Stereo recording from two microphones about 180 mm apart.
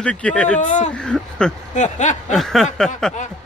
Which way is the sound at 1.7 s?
40° left (ahead or behind).